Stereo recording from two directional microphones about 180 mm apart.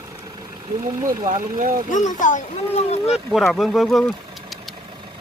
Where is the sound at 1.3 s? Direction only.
45° right (ahead or behind).